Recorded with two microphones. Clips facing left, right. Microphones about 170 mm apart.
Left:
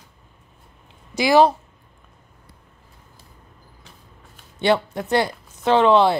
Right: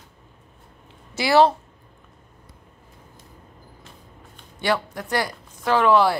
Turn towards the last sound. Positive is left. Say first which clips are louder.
# left 3 dB
turn(degrees=25)  # may be behind; listen again after turning